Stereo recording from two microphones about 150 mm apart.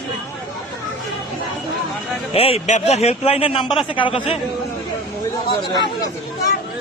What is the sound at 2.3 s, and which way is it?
A man's voice, 40° left (ahead or behind).